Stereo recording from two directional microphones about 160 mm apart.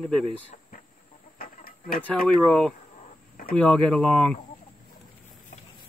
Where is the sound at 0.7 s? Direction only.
65° left (ahead or behind).